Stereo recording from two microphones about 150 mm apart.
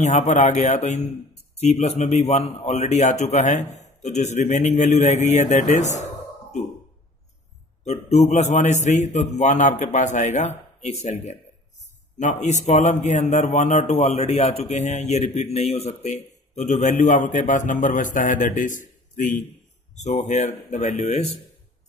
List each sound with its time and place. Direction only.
0.0 s a man's voice: 50° left (ahead or behind)
7.8 s a man's voice: 45° left (ahead or behind)